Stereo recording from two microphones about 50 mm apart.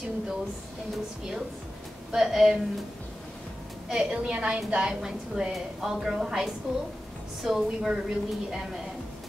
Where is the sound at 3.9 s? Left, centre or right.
Centre.